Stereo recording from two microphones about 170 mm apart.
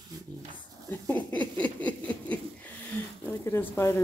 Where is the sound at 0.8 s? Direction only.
10° left (ahead or behind).